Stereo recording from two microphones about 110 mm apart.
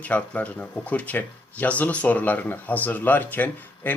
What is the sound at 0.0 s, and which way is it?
Speech, 15° left (ahead or behind).